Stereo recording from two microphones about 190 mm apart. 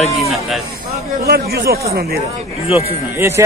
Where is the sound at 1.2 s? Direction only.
55° right (ahead or behind).